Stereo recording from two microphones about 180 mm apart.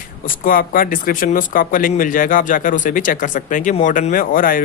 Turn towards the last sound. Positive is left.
turn(degrees=50)  # may be behind; listen again after turning